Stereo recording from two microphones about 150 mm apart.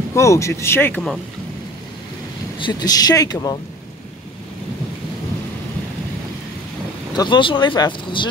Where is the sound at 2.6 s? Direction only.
25° left (ahead or behind).